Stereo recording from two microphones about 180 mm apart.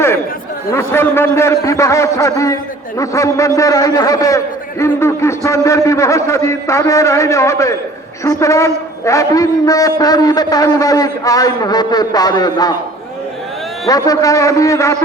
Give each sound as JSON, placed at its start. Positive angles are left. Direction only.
{"t": 0.7, "sound": "a man's voice", "side_deg": 15}
{"t": 13.8, "sound": "a man's voice", "side_deg": 20}